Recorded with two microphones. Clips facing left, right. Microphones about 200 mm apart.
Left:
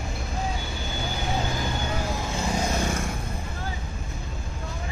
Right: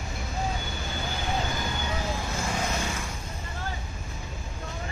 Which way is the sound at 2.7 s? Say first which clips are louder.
Left 5 dB; 50° left (ahead or behind).